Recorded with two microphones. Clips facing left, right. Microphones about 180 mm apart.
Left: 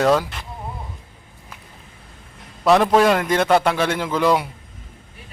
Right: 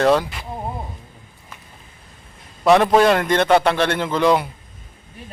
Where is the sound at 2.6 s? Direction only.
Centre (ahead or behind).